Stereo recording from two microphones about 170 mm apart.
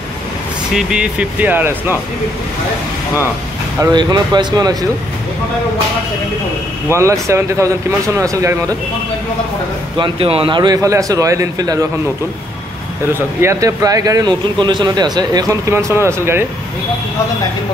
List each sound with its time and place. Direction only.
0.7 s speech: 5° right (ahead or behind)
3.8 s a man's voice: 25° right (ahead or behind)
6.9 s speech: 15° right (ahead or behind)
9.9 s a man's voice: 30° right (ahead or behind)
13.1 s a man's voice: 15° right (ahead or behind)